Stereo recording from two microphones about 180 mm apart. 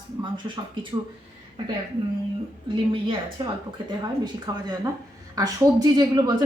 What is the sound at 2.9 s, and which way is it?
A woman's voice, 25° right (ahead or behind).